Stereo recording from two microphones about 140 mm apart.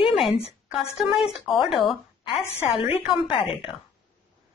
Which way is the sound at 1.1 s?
5° right (ahead or behind).